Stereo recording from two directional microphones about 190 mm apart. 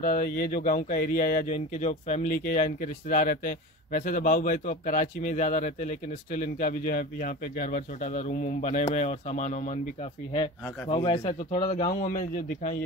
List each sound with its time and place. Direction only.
0.0 s speech: 45° left (ahead or behind)
1.5 s speech: 35° left (ahead or behind)
10.3 s speech: 25° left (ahead or behind)
12.1 s speech: 45° left (ahead or behind)